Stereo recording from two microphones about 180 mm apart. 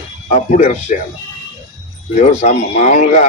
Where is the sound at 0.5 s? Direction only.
40° left (ahead or behind).